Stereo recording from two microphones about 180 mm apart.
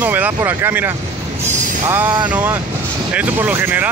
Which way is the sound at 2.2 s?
10° right (ahead or behind).